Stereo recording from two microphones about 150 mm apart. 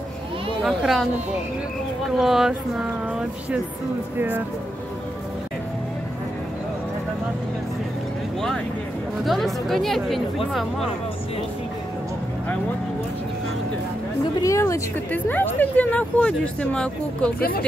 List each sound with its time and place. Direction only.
0.6 s speech: centre (ahead or behind)
2.0 s speech: centre (ahead or behind)
9.2 s speech: centre (ahead or behind)
14.4 s speech: 20° left (ahead or behind)
17.4 s speech: 90° left